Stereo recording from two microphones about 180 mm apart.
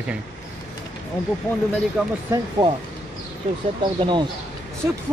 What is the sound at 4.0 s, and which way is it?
Speech, 25° right (ahead or behind).